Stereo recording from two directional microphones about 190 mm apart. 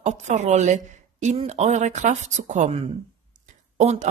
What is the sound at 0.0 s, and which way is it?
A woman's voice, 40° right (ahead or behind).